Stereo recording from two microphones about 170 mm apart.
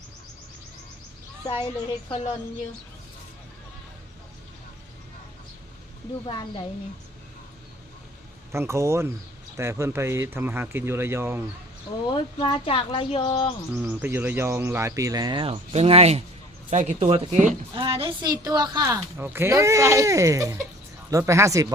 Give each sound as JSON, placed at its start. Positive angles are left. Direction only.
{"t": 2.0, "sound": "speech", "side_deg": 35}
{"t": 6.2, "sound": "speech", "side_deg": 30}
{"t": 8.5, "sound": "speech", "side_deg": -15}
{"t": 12.1, "sound": "speech", "side_deg": 30}
{"t": 13.7, "sound": "a woman's voice", "side_deg": -15}
{"t": 19.1, "sound": "speech", "side_deg": -10}